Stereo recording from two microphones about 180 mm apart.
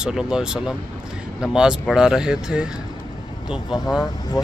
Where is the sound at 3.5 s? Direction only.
25° left (ahead or behind).